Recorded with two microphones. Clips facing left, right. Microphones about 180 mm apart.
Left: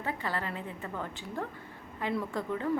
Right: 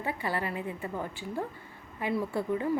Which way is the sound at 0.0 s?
10° right (ahead or behind).